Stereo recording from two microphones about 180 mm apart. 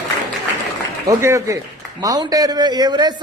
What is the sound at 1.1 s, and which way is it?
A man's voice, 15° right (ahead or behind).